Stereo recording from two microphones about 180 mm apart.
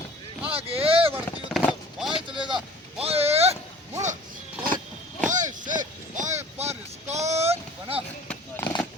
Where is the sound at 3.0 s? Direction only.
35° right (ahead or behind).